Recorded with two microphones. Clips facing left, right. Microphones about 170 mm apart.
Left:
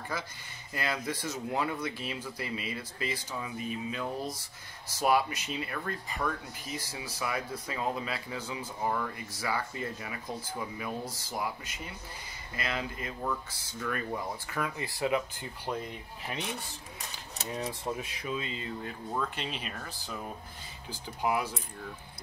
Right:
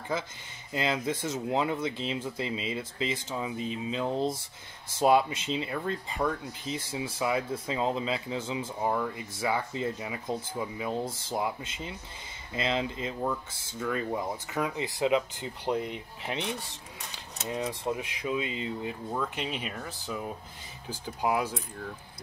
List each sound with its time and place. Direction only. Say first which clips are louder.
0.1 s speech: right 7 dB; 20° right (ahead or behind)
21.2 s speech: right 2 dB; 15° right (ahead or behind)